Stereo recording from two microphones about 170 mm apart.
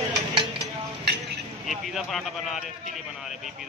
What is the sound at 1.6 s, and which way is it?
Speech, centre (ahead or behind).